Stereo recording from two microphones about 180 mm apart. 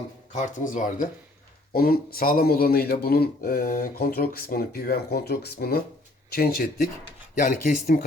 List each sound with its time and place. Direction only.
0.3 s speech: 45° left (ahead or behind)
1.7 s a man's voice: 55° left (ahead or behind)
7.3 s speech: 45° left (ahead or behind)